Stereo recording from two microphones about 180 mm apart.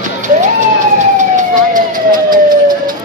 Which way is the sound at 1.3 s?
45° right (ahead or behind).